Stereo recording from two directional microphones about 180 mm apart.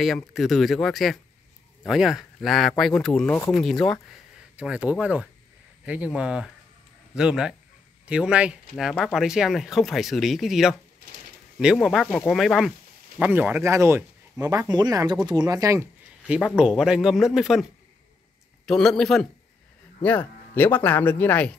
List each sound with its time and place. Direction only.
0.0 s speech: centre (ahead or behind); by 16.3 s 15° right (ahead or behind)
16.3 s speech: centre (ahead or behind)
18.7 s speech: 5° left (ahead or behind)